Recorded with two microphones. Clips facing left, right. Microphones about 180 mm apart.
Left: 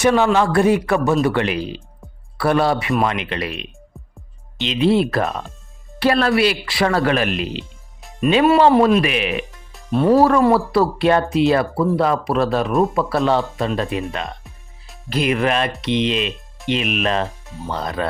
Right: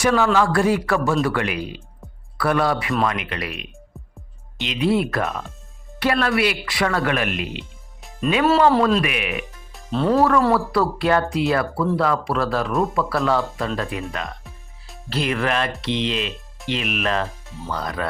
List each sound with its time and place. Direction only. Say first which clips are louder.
0.0 s speech: left 3 dB; 25° left (ahead or behind)
8.4 s speech: left 3 dB; 20° left (ahead or behind)
9.9 s speech: left 5 dB; 15° left (ahead or behind)
10.2 s speech: left 2 dB; 25° left (ahead or behind)
14.8 s music: even; centre (ahead or behind)
15.1 s speech: left 4 dB; 15° left (ahead or behind)